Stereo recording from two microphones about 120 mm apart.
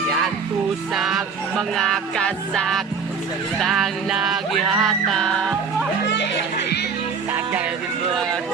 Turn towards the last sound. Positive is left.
turn(degrees=-20)  # may be behind; listen again after turning